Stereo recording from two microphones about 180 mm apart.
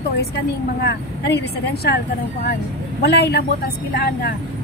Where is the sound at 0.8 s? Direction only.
65° left (ahead or behind).